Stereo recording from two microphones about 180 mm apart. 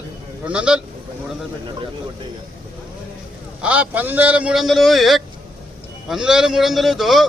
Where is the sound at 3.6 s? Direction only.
10° right (ahead or behind).